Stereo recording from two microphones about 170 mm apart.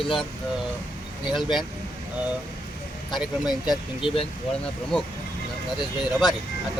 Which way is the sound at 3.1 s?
5° right (ahead or behind).